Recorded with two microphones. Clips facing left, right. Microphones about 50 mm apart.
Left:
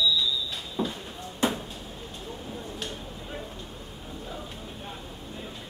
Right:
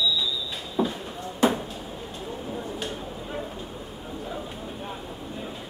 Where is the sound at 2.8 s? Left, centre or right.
Centre.